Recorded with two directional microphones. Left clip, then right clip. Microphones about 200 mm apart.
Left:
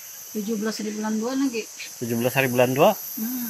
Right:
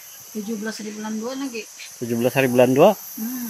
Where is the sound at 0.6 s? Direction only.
20° left (ahead or behind).